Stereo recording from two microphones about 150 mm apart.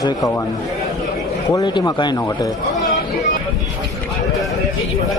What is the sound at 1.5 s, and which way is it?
Speech, 25° left (ahead or behind).